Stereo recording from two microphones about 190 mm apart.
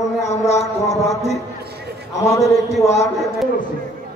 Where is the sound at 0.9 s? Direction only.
15° left (ahead or behind).